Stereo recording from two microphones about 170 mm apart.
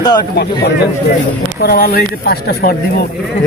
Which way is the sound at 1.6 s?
65° left (ahead or behind).